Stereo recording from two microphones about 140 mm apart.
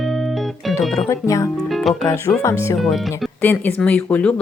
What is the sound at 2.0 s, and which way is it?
Speech, 20° left (ahead or behind).